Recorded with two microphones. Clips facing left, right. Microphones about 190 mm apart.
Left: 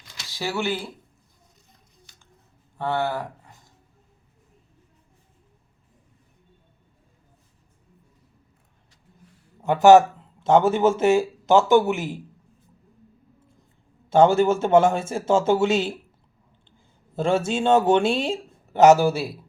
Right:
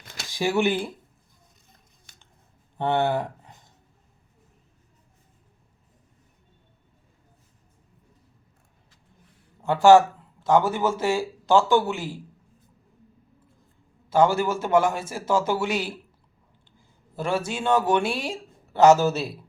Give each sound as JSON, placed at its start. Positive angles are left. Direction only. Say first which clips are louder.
{"t": 0.0, "sound": "a sound", "louder": "right 4 dB", "side_deg": -50}
{"t": 0.3, "sound": "speech", "louder": "right 4 dB", "side_deg": -15}
{"t": 2.1, "sound": "scissors", "louder": "right 1 dB", "side_deg": -50}
{"t": 2.7, "sound": "speech", "louder": "right 2 dB", "side_deg": -20}
{"t": 9.6, "sound": "speech", "louder": "left 2 dB", "side_deg": 20}
{"t": 14.1, "sound": "speech", "louder": "left 4 dB", "side_deg": 25}
{"t": 17.2, "sound": "speech", "louder": "left 5 dB", "side_deg": 25}